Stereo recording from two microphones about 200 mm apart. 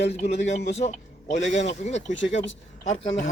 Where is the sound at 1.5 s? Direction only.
35° left (ahead or behind).